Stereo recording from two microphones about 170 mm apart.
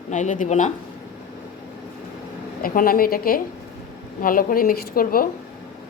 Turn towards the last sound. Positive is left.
turn(degrees=60)  # may be behind; listen again after turning